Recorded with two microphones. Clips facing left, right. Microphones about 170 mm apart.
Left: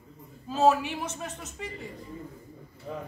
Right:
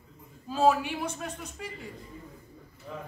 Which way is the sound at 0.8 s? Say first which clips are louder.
Right 1 dB; 5° right (ahead or behind).